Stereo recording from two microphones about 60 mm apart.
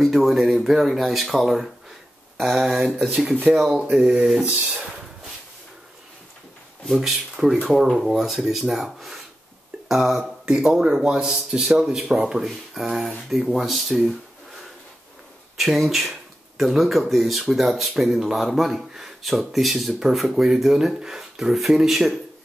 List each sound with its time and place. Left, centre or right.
0.0 s speech: centre
3.9 s speech: centre
4.4 s speech: right
4.6 s speech: centre
6.9 s speech: centre
15.5 s speech: centre